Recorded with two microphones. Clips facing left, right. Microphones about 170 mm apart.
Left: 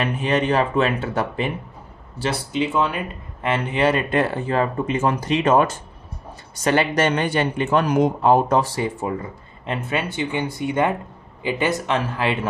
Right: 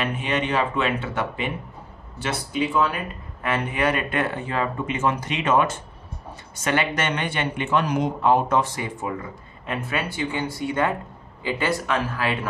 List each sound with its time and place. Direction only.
0.0 s speech: 40° left (ahead or behind)